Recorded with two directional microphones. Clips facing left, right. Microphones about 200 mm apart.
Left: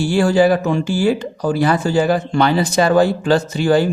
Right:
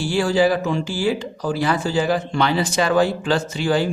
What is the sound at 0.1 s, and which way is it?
Speech, 50° left (ahead or behind).